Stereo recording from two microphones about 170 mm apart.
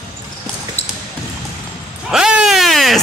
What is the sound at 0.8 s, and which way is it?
Music, 40° left (ahead or behind).